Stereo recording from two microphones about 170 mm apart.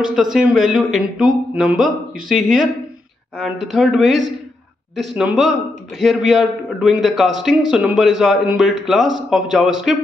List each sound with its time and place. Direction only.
0.0 s a man's voice: centre (ahead or behind)